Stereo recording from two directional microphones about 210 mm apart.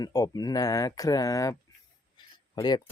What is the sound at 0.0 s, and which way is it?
Speech, 20° left (ahead or behind).